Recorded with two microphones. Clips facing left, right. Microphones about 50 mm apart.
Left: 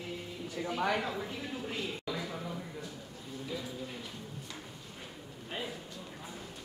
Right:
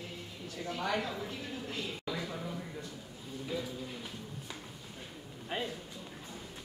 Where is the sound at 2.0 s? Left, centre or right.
Centre.